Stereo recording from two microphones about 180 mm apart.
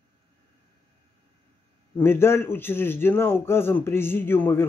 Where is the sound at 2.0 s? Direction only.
15° left (ahead or behind).